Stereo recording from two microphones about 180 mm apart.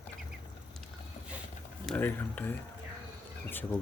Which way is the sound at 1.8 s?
10° left (ahead or behind).